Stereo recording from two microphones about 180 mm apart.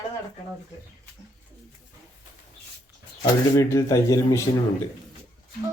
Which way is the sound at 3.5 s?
20° left (ahead or behind).